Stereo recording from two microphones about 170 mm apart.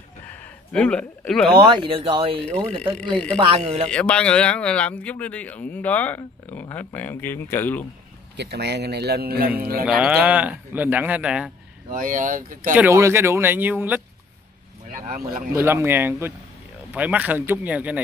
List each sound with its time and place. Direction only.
0.3 s a sound: 5° left (ahead or behind)
1.6 s speech: 30° right (ahead or behind)
3.9 s a man's voice: 5° left (ahead or behind)
8.4 s a man's voice: 80° right; by 9.8 s 60° right (ahead or behind)
9.8 s a man's voice: 5° right (ahead or behind)
11.9 s speech: 50° right (ahead or behind)
12.7 s a man's voice: 15° right (ahead or behind)
15.5 s a man's voice: 15° right (ahead or behind)